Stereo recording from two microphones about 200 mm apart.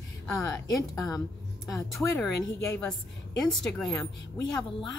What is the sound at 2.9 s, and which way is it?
Speech, centre (ahead or behind).